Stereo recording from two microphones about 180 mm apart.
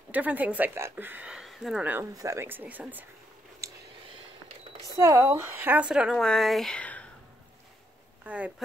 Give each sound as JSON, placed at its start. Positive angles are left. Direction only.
{"t": 0.1, "sound": "speech", "side_deg": -10}
{"t": 3.6, "sound": "a sound", "side_deg": -15}
{"t": 4.8, "sound": "speech", "side_deg": -15}
{"t": 8.2, "sound": "speech", "side_deg": -5}